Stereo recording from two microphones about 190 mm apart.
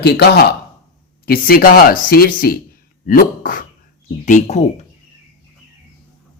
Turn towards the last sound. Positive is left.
turn(degrees=40)  # may be behind; listen again after turning